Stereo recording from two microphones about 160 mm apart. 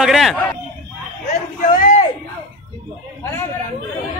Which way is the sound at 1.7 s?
55° left (ahead or behind).